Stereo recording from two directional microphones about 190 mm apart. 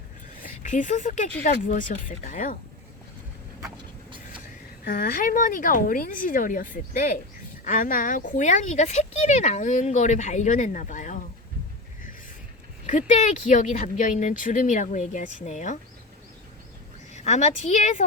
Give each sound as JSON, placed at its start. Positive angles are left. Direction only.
{"t": 0.4, "sound": "speech", "side_deg": 40}
{"t": 4.9, "sound": "speech", "side_deg": 50}
{"t": 12.8, "sound": "speech", "side_deg": 40}
{"t": 17.1, "sound": "a woman's voice", "side_deg": 40}